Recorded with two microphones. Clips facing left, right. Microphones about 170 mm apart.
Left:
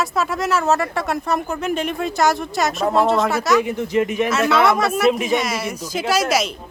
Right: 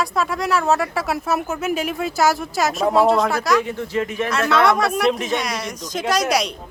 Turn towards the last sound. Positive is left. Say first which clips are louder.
# left 1 dB
turn(degrees=0)  # may be behind; listen again after turning